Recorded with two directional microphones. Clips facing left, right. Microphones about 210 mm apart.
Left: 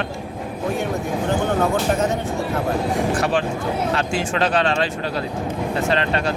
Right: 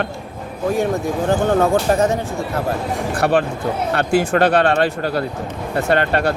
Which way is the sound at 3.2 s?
60° right (ahead or behind).